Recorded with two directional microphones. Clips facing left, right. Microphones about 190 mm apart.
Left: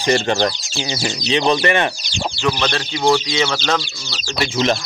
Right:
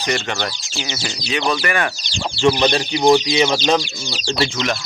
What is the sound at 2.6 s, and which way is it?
Speech, 15° right (ahead or behind).